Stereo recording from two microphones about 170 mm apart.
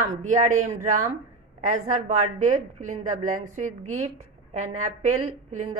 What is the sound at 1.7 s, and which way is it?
A woman's voice, 45° right (ahead or behind).